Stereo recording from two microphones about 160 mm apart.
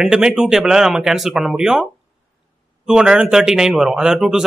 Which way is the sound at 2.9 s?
5° right (ahead or behind).